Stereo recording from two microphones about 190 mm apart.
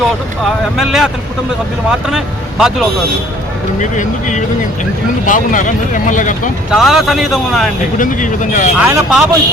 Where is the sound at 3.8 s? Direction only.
40° left (ahead or behind).